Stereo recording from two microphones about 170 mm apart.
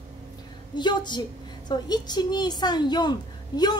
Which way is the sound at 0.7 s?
25° left (ahead or behind).